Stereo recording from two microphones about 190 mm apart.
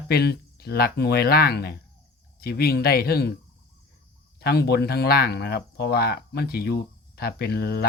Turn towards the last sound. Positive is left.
turn(degrees=60)  # may be behind; listen again after turning